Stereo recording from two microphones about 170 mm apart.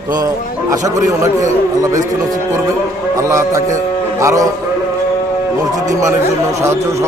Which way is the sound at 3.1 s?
20° right (ahead or behind).